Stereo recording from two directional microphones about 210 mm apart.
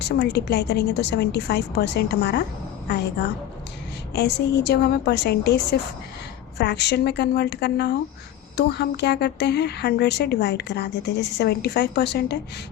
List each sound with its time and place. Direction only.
0.0 s a woman's voice: 50° left (ahead or behind)
4.1 s a woman's voice: 50° left (ahead or behind)